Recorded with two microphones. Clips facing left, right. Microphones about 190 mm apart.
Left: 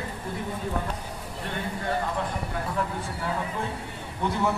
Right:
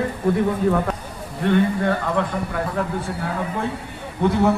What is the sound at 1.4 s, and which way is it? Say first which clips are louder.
Speech: right 14 dB; 85° right.